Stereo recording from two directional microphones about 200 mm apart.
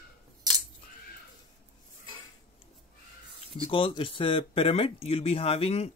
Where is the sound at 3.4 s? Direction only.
25° left (ahead or behind).